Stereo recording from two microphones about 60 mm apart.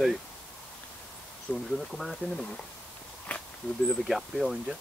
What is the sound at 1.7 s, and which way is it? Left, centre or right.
Speech, centre.